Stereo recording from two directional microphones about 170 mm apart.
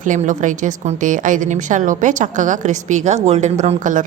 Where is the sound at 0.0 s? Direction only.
50° right (ahead or behind).